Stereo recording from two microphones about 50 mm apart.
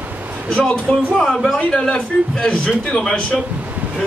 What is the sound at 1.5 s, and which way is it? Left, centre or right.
Speech, centre.